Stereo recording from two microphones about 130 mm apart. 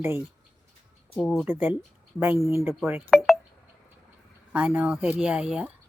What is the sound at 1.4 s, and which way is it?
Speech, 15° right (ahead or behind).